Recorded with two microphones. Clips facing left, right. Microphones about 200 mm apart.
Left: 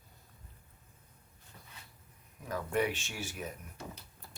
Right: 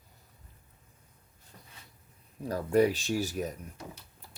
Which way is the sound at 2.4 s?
35° right (ahead or behind).